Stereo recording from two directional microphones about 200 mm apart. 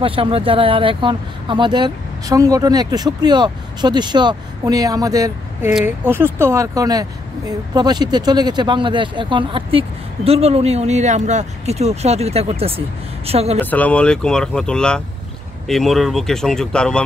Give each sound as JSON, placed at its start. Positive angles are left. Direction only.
{"t": 0.0, "sound": "speech", "side_deg": -25}
{"t": 13.6, "sound": "speech", "side_deg": 10}